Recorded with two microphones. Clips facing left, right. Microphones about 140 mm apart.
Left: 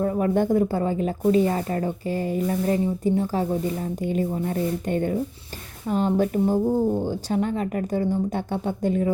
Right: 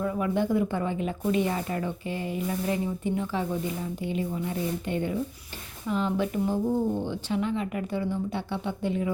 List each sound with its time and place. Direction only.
0.0 s speech: 40° left (ahead or behind)